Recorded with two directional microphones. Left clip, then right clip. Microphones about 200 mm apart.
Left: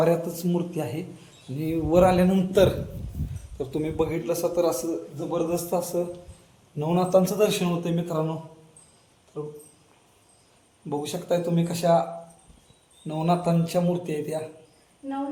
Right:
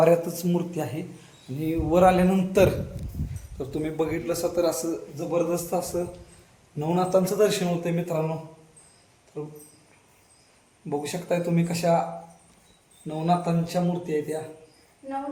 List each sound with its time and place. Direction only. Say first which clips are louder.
0.0 s a man's voice: right 3 dB; 10° right (ahead or behind)
9.4 s a man's voice: left 1 dB; 10° left (ahead or behind)
10.8 s a man's voice: even; 10° left (ahead or behind)
13.1 s speech: even; 35° left (ahead or behind)